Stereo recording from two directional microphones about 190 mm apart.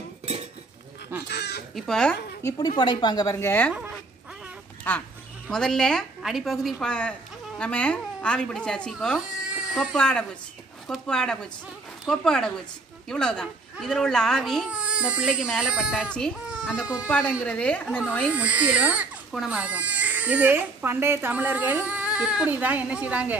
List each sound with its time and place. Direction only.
1.3 s goose: 60° left (ahead or behind)
1.8 s a woman's voice: 5° left (ahead or behind)
2.8 s a woman's voice: 25° left (ahead or behind)
4.9 s a woman's voice: 10° left (ahead or behind)
18.3 s speech: 10° right (ahead or behind)